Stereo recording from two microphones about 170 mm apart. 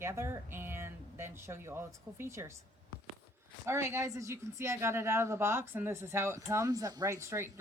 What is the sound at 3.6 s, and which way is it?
Speech, 15° right (ahead or behind).